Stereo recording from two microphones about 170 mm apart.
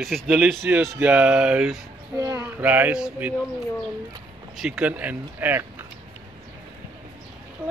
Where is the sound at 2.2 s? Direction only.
20° right (ahead or behind).